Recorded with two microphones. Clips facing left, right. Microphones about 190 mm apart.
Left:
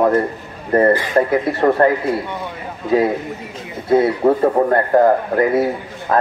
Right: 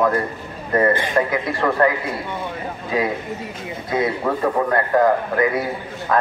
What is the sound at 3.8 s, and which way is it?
Speech, 30° left (ahead or behind).